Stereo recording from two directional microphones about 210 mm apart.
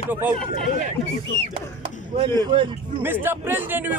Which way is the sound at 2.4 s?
25° right (ahead or behind).